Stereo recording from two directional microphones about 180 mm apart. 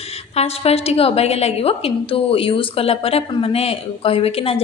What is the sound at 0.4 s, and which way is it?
Speech, 35° left (ahead or behind).